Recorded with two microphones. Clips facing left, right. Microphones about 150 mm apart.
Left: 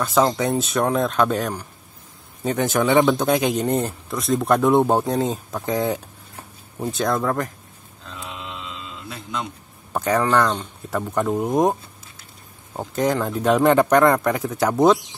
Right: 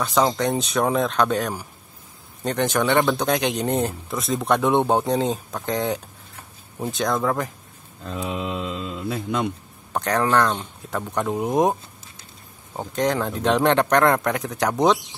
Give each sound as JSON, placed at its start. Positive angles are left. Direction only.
{"t": 0.0, "sound": "speech", "side_deg": 0}
{"t": 8.0, "sound": "mantra", "side_deg": -55}
{"t": 9.9, "sound": "speech", "side_deg": 5}
{"t": 12.7, "sound": "speech", "side_deg": 5}